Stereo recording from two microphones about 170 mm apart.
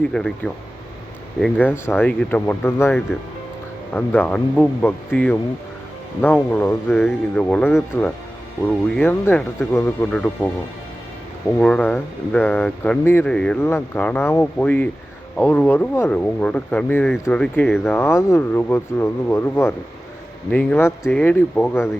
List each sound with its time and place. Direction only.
0.0 s speech: 5° left (ahead or behind)
11.5 s speech: 5° left (ahead or behind)